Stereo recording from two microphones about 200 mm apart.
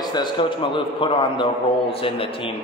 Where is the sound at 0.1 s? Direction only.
25° left (ahead or behind).